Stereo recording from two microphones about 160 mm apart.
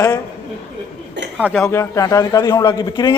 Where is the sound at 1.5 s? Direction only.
15° left (ahead or behind).